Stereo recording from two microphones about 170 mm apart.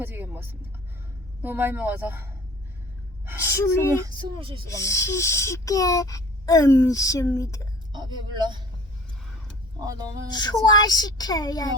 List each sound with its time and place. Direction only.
0.0 s a sound: 10° right (ahead or behind)
1.4 s speech: 10° right (ahead or behind)
3.4 s speech: 15° left (ahead or behind)
3.9 s speech: 20° right (ahead or behind)
4.4 s speech: 30° right (ahead or behind)
4.7 s speech: 15° left (ahead or behind)
7.9 s speech: 25° right (ahead or behind)
9.8 s speech: 20° right (ahead or behind)
10.2 s a child's voice: 25° left (ahead or behind)